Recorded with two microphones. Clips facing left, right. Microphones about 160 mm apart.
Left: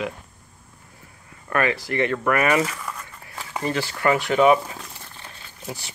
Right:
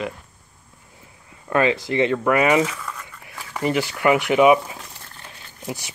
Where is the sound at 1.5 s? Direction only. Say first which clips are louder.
Right 4 dB; 20° right (ahead or behind).